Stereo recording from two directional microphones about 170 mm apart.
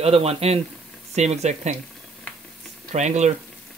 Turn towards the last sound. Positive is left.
turn(degrees=-45)  # may be behind; listen again after turning